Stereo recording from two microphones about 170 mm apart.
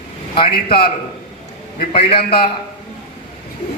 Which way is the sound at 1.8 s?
60° left (ahead or behind).